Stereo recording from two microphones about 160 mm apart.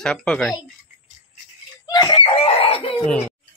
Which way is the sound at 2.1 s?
35° left (ahead or behind).